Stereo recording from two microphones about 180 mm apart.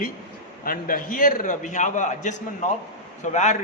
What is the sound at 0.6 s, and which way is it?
A man's voice, 50° left (ahead or behind).